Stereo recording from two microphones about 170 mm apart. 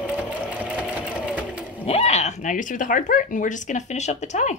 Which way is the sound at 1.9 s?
40° left (ahead or behind).